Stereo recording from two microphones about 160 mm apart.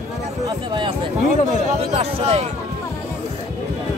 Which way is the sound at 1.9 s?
40° right (ahead or behind).